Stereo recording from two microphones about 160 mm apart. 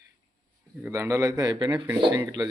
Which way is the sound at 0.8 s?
15° right (ahead or behind).